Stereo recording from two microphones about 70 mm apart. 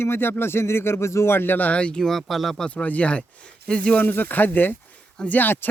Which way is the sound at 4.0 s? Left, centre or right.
Left.